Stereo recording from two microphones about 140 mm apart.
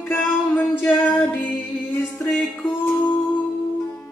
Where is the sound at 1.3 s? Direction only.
10° left (ahead or behind).